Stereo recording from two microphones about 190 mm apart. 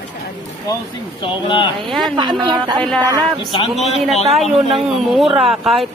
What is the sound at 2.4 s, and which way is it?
Speech, 20° right (ahead or behind).